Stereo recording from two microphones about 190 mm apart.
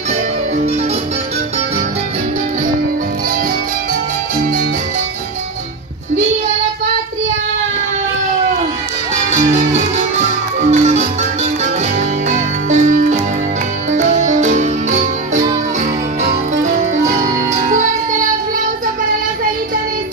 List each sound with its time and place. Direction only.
9.3 s music: 35° right (ahead or behind)
12.3 s music: 40° right (ahead or behind)